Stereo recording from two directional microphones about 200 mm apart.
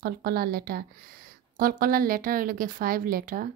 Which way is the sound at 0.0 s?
50° right (ahead or behind).